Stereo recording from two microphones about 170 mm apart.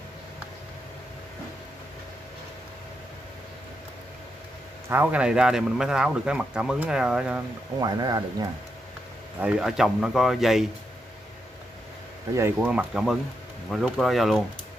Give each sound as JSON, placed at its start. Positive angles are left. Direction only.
{"t": 4.8, "sound": "a man's voice", "side_deg": -10}
{"t": 7.8, "sound": "speech", "side_deg": -25}
{"t": 9.4, "sound": "a man's voice", "side_deg": -5}
{"t": 12.4, "sound": "a man's voice", "side_deg": -10}